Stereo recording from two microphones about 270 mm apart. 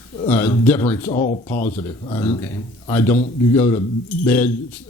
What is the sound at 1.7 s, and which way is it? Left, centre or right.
Speech, centre.